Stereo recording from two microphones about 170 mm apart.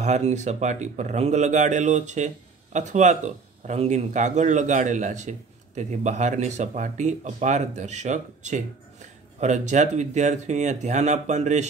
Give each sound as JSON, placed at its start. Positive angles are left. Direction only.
{"t": 0.0, "sound": "a man's voice", "side_deg": -40}